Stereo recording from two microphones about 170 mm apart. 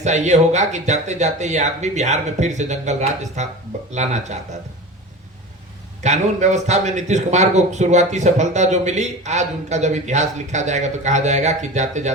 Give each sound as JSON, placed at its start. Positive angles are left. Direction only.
{"t": 0.0, "sound": "a man's voice", "side_deg": -45}
{"t": 6.0, "sound": "a man's voice", "side_deg": -45}